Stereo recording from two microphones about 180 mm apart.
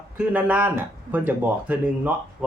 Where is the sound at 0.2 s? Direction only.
10° right (ahead or behind).